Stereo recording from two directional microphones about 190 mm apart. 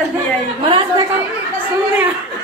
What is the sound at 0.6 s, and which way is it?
Speech, 25° right (ahead or behind).